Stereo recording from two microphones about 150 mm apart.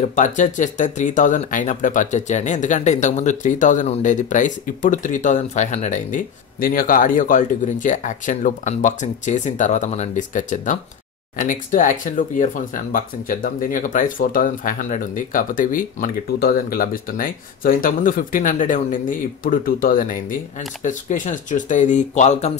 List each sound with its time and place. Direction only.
0.1 s speech: 55° left (ahead or behind)